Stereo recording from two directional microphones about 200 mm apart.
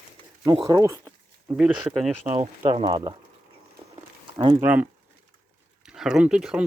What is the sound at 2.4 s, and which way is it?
Speech, 30° right (ahead or behind).